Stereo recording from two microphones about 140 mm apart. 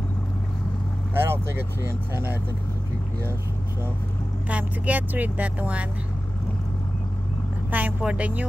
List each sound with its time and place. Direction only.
1.1 s speech: 15° right (ahead or behind)
4.5 s speech: 10° right (ahead or behind)
7.7 s speech: 10° right (ahead or behind)